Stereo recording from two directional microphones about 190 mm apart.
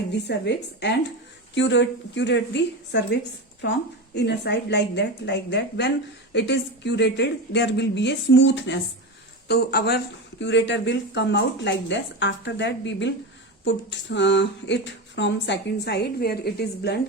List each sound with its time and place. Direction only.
0.1 s a woman's voice: 65° left (ahead or behind)
9.5 s a woman's voice: 60° left (ahead or behind)
10.4 s speech: 70° left (ahead or behind)